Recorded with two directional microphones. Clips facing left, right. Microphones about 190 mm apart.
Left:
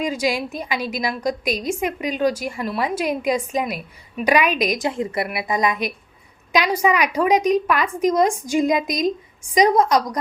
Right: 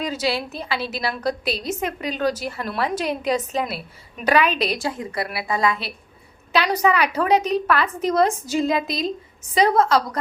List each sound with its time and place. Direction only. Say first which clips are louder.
0.0 s a woman's voice: left 2 dB; 10° left (ahead or behind)
4.9 s a woman's voice: left 3 dB; 25° left (ahead or behind)